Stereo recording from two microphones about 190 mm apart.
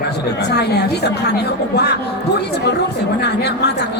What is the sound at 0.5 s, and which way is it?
A woman's voice, 60° left (ahead or behind).